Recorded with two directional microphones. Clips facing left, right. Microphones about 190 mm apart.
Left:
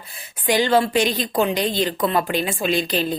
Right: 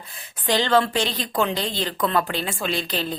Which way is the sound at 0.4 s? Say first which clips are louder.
Left 2 dB; 10° left (ahead or behind).